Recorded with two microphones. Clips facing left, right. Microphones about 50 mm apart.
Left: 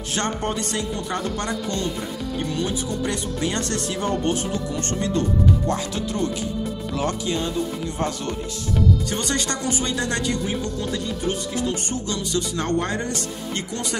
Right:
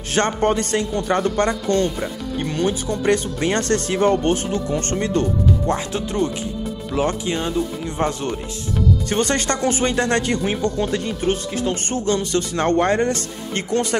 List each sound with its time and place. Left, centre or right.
0.1 s speech: right
5.7 s speech: right